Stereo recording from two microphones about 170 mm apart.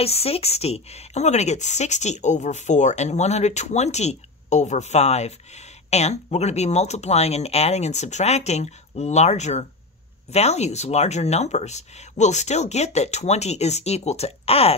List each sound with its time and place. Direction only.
0.0 s a woman's voice: 35° left (ahead or behind)